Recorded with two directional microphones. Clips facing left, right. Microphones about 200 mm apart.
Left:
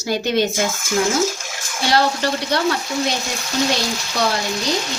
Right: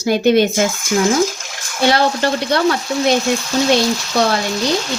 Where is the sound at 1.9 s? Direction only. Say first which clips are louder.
Right 3 dB; 60° right (ahead or behind).